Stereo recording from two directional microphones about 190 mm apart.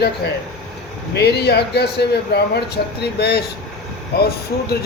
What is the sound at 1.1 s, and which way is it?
Speech, 60° left (ahead or behind).